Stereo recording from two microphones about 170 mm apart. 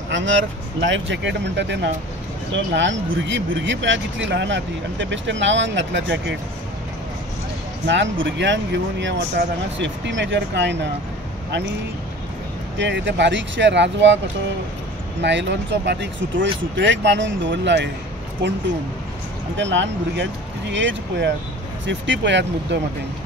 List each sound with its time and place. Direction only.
0.1 s speech: 90° right
7.8 s speech: 90° right
12.7 s speech: 90° right
15.2 s speech: 90° right
19.5 s speech: 90° right